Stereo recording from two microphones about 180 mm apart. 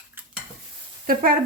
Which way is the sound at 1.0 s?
55° right (ahead or behind).